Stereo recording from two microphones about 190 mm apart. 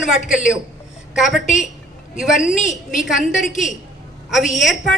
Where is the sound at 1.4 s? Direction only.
40° left (ahead or behind).